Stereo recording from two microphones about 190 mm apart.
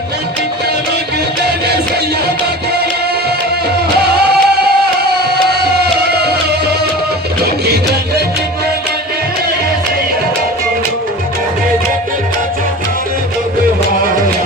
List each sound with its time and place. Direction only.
1.5 s music: 60° right (ahead or behind)
4.3 s music: 55° right (ahead or behind)